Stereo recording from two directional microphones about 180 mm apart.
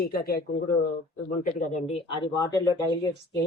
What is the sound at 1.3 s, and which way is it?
Speech, 45° left (ahead or behind).